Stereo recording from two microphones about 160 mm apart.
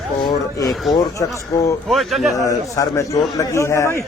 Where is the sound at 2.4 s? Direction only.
20° left (ahead or behind).